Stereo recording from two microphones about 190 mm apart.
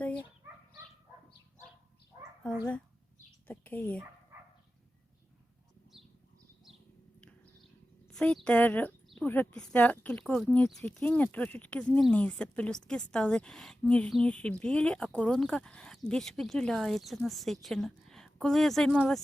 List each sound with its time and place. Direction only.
2.1 s dog: 15° right (ahead or behind)
3.4 s a sound: 10° left (ahead or behind)
8.1 s speech: 5° left (ahead or behind)